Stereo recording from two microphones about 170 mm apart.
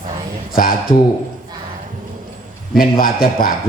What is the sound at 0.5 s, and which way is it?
Speech, 60° left (ahead or behind).